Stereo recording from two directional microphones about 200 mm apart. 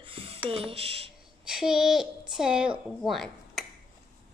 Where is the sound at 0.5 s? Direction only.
30° right (ahead or behind).